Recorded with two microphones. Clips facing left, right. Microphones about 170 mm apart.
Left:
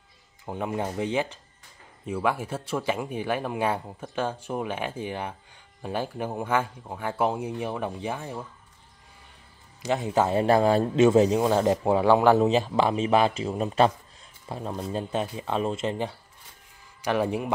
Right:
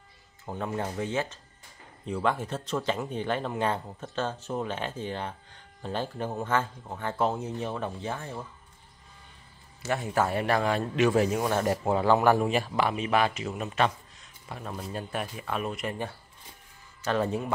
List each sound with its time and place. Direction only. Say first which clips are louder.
0.5 s speech: left 3 dB; 15° left (ahead or behind)
9.8 s a man's voice: left 3 dB; 15° left (ahead or behind)